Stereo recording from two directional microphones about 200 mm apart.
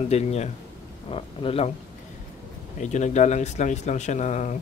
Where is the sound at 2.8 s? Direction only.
35° left (ahead or behind).